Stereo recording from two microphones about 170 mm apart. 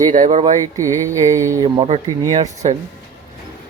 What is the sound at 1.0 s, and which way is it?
Mantra, 15° right (ahead or behind).